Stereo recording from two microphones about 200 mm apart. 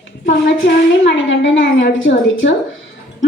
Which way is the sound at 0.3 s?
65° left (ahead or behind).